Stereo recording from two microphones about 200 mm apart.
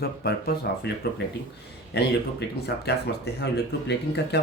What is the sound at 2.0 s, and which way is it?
Speech, 55° left (ahead or behind).